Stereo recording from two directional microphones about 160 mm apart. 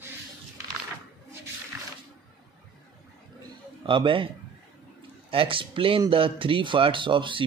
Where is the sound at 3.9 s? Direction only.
30° right (ahead or behind).